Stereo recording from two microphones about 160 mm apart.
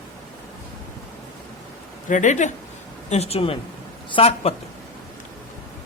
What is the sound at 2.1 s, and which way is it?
Speech, 50° left (ahead or behind).